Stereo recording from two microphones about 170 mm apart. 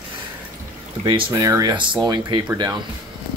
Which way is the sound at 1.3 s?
20° right (ahead or behind).